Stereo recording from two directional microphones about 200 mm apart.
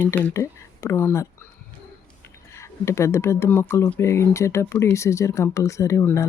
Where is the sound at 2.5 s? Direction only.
15° left (ahead or behind).